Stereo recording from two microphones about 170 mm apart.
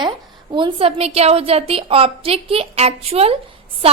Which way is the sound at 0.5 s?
30° right (ahead or behind).